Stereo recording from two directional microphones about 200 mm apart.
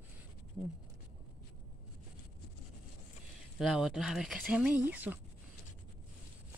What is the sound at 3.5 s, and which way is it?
Speech, centre (ahead or behind).